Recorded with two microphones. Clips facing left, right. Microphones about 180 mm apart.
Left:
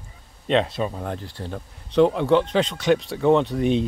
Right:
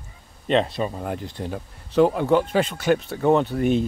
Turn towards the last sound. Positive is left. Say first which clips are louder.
# even
turn(degrees=-5)  # may be behind; listen again after turning